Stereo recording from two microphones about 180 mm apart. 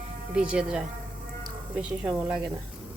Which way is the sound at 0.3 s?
5° right (ahead or behind).